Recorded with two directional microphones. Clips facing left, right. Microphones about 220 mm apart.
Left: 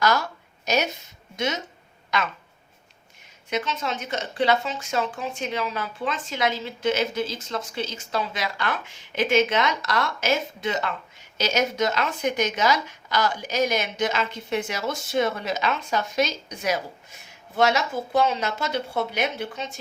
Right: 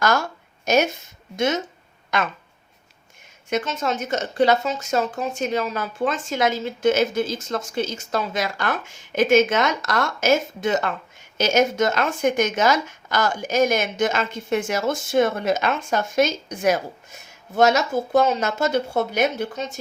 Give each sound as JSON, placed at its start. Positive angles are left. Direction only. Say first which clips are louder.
{"t": 0.0, "sound": "a sound", "louder": "right 2 dB", "side_deg": -50}
{"t": 1.4, "sound": "a woman's voice", "louder": "right 6 dB", "side_deg": -50}
{"t": 3.5, "sound": "a woman's voice", "louder": "right 4 dB", "side_deg": -45}